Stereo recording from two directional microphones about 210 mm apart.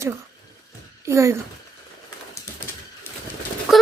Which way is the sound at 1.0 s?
15° right (ahead or behind).